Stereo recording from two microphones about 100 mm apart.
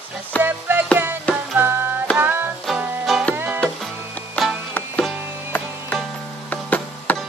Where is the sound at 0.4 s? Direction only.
20° right (ahead or behind).